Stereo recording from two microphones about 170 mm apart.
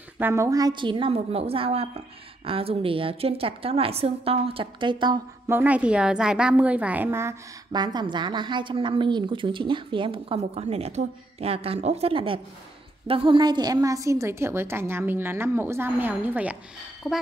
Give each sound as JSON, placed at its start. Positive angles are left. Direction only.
{"t": 0.2, "sound": "a woman's voice", "side_deg": -15}
{"t": 5.5, "sound": "a woman's voice", "side_deg": -10}
{"t": 17.0, "sound": "speech", "side_deg": 15}